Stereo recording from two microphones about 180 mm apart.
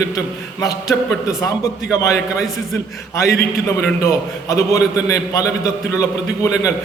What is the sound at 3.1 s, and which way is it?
A man's voice, 15° left (ahead or behind).